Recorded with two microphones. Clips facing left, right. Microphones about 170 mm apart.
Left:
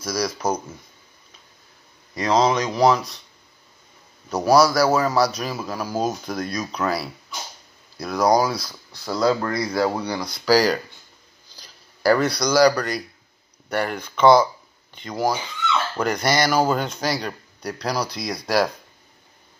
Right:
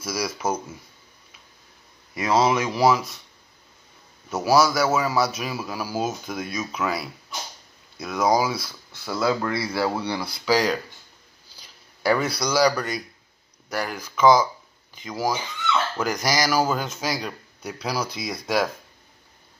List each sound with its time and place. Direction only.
0.0 s a man's voice: 5° right (ahead or behind)
2.1 s a man's voice: 5° right (ahead or behind)
4.3 s a man's voice: 5° right (ahead or behind)
9.8 s speech: 15° left (ahead or behind)
10.2 s a man's voice: centre (ahead or behind)
11.5 s a sound: centre (ahead or behind)
13.7 s a man's voice: centre (ahead or behind)